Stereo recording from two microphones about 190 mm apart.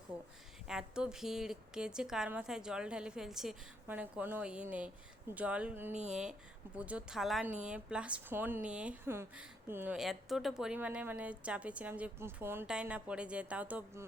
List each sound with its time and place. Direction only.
0.7 s a woman's voice: 5° right (ahead or behind)
5.9 s speech: 35° right (ahead or behind)
6.7 s a woman's voice: 5° right (ahead or behind)